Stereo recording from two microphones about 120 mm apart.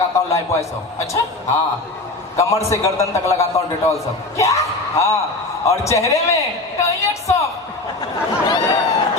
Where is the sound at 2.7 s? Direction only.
25° left (ahead or behind).